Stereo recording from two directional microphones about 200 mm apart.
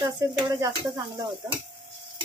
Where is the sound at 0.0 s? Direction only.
15° right (ahead or behind).